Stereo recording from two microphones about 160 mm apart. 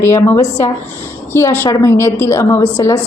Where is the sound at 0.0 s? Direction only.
15° left (ahead or behind).